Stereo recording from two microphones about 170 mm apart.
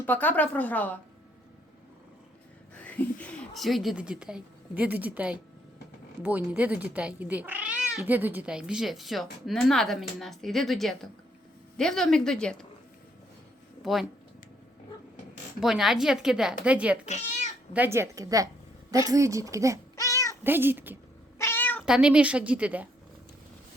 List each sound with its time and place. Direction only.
0.0 s speech: 10° left (ahead or behind)
2.7 s speech: 10° left (ahead or behind)
13.8 s speech: centre (ahead or behind)
15.6 s a woman's voice: centre (ahead or behind)
17.1 s cat: 45° left (ahead or behind)
17.7 s a woman's voice: 15° right (ahead or behind)
20.0 s cat: 20° left (ahead or behind)
20.4 s a woman's voice: 10° right (ahead or behind)
21.3 s cat: 15° left (ahead or behind)
21.8 s a woman's voice: 5° right (ahead or behind)